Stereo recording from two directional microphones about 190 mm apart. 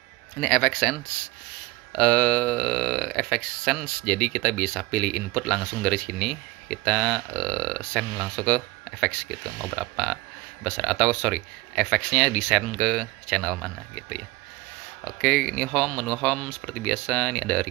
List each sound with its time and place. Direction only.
0.4 s speech: 5° left (ahead or behind)
15.2 s speech: 5° left (ahead or behind)